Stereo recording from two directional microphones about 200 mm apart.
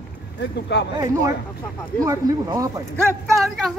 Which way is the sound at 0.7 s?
60° left (ahead or behind).